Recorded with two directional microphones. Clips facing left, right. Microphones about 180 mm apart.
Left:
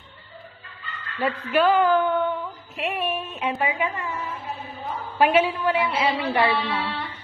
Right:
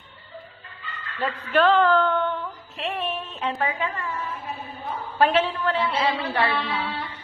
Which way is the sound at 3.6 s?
15° left (ahead or behind).